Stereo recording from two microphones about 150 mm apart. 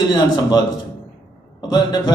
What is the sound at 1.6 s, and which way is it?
Speech, 25° left (ahead or behind).